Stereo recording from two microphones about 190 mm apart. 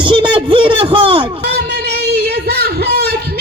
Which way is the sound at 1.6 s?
60° right (ahead or behind).